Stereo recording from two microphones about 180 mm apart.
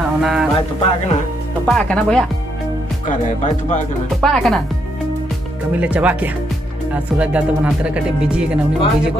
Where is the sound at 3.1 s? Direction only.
45° left (ahead or behind).